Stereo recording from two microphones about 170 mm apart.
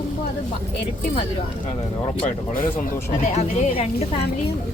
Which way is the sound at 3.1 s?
40° left (ahead or behind).